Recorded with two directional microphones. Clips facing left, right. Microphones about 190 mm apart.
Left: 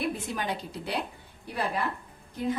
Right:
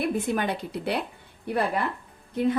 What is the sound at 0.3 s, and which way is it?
Speech, 60° right (ahead or behind).